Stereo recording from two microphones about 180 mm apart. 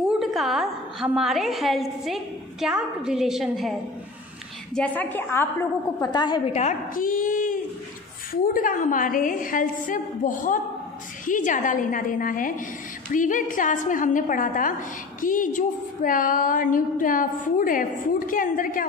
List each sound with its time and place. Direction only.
0.2 s a woman's voice: centre (ahead or behind)
4.7 s a woman's voice: 10° left (ahead or behind); by 6.5 s 25° left (ahead or behind)
6.5 s a woman's voice: 45° left (ahead or behind)